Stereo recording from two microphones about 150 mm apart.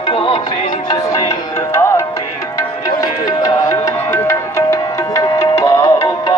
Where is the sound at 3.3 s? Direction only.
25° left (ahead or behind).